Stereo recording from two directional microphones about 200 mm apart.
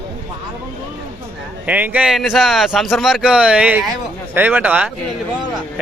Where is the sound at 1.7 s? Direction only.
5° right (ahead or behind).